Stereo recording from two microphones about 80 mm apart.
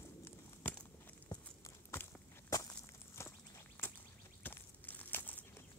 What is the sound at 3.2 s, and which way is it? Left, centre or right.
Walk, left.